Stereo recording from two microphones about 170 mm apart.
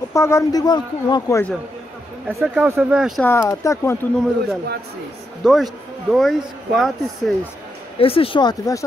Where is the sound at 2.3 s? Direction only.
15° right (ahead or behind).